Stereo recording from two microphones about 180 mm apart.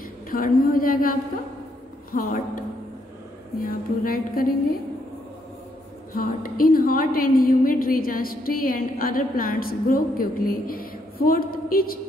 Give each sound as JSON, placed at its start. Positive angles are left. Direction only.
{"t": 0.3, "sound": "a woman's voice", "side_deg": 50}
{"t": 2.1, "sound": "a woman's voice", "side_deg": 55}
{"t": 6.1, "sound": "a woman's voice", "side_deg": 50}